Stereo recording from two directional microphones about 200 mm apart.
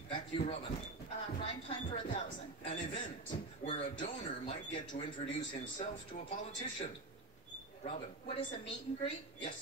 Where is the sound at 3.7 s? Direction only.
30° left (ahead or behind).